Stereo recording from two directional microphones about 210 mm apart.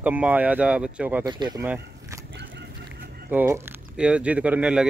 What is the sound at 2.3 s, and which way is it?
Chicken, 55° right (ahead or behind).